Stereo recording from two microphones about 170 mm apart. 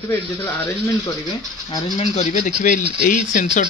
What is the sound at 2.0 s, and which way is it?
Speech, 45° left (ahead or behind).